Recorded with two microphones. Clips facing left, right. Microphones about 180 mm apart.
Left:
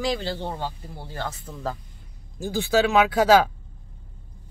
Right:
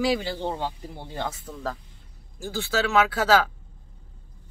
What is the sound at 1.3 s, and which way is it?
Speech, centre (ahead or behind).